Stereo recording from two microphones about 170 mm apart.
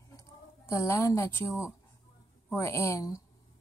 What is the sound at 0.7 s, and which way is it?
A woman's voice, 15° left (ahead or behind).